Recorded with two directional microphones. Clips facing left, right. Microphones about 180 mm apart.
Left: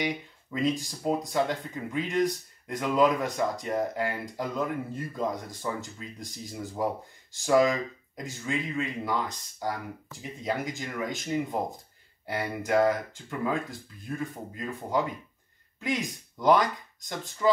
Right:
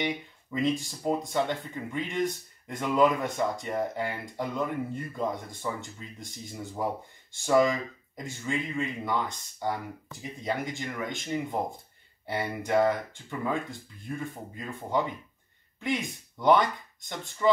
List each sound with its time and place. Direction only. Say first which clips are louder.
0.0 s speech: even; centre (ahead or behind)